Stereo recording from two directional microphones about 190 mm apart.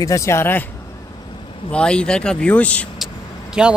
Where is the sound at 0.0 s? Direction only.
15° left (ahead or behind).